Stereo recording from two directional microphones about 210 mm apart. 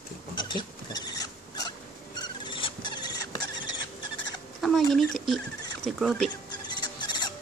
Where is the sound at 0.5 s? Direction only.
20° left (ahead or behind).